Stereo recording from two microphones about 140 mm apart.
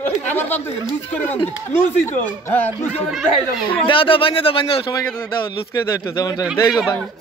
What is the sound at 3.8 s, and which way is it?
Speech, 40° left (ahead or behind).